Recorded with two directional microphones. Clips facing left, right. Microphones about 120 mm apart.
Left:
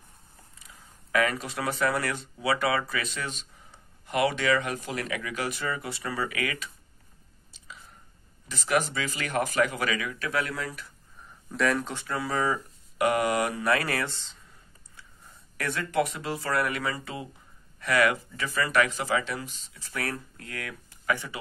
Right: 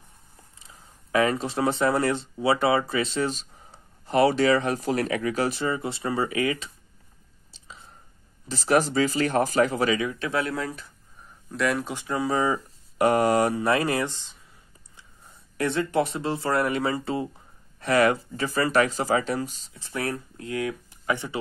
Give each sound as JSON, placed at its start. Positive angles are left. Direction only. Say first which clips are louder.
{"t": 0.6, "sound": "speech", "louder": "right 1 dB", "side_deg": -25}
{"t": 7.5, "sound": "a sound", "louder": "right 1 dB", "side_deg": -30}
{"t": 8.5, "sound": "speech", "louder": "right 5 dB", "side_deg": -35}
{"t": 11.5, "sound": "speech", "louder": "right 1 dB", "side_deg": 0}
{"t": 11.9, "sound": "speech", "louder": "right 5 dB", "side_deg": -15}
{"t": 13.0, "sound": "speech", "louder": "right 5 dB", "side_deg": -35}
{"t": 15.5, "sound": "speech", "louder": "right 4 dB", "side_deg": -25}